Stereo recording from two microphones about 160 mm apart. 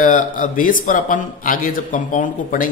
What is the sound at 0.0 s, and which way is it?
Speech, 55° left (ahead or behind).